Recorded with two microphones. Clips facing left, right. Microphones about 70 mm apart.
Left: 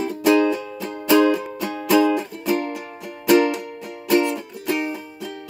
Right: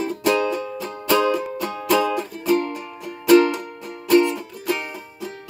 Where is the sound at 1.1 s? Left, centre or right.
Centre.